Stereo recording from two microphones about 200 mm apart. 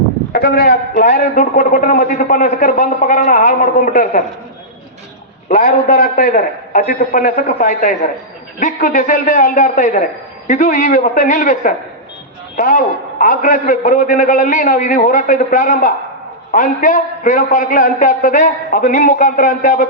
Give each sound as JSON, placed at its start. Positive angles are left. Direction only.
{"t": 0.3, "sound": "a man's voice", "side_deg": 50}
{"t": 5.5, "sound": "a man's voice", "side_deg": 50}